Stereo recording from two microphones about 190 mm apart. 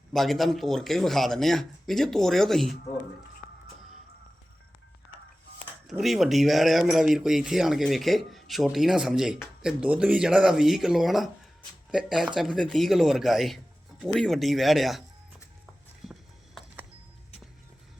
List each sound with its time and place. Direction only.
0.1 s speech: centre (ahead or behind)
5.9 s speech: centre (ahead or behind)
16.0 s a sound: centre (ahead or behind)